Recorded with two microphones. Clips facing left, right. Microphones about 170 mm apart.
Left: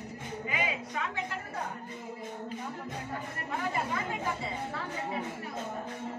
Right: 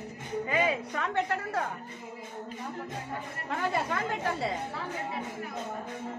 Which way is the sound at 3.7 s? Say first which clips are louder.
Right 3 dB; 80° right.